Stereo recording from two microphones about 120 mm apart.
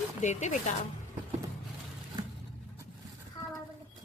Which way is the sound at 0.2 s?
85° left.